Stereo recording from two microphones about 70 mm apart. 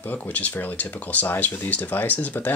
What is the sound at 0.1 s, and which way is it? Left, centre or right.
Speech, left.